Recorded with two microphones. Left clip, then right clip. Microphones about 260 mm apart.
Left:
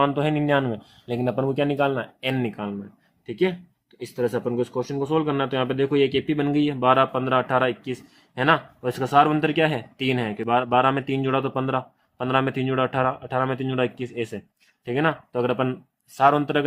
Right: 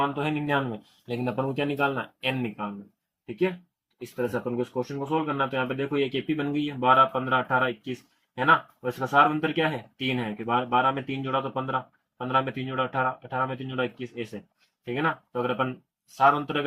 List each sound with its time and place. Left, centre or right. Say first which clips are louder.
0.0 s speech: left 5 dB; left
4.0 s speech: left 4 dB; left